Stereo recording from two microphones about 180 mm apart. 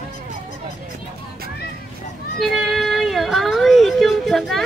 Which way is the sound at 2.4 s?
Centre (ahead or behind).